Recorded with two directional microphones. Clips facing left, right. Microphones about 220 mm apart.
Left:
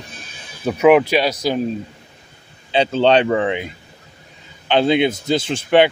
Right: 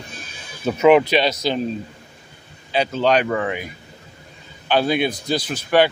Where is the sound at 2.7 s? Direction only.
30° left (ahead or behind).